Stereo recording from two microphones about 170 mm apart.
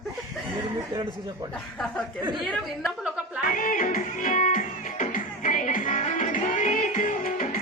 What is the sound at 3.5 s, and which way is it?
Music, 50° left (ahead or behind).